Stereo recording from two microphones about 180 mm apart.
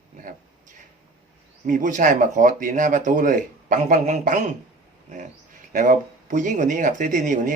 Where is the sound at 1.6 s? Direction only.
45° right (ahead or behind).